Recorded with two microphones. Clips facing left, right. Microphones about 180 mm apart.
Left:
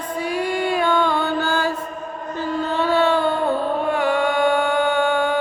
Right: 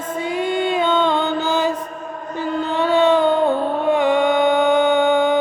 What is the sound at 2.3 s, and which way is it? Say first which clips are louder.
Music: right 1 dB; 15° right (ahead or behind).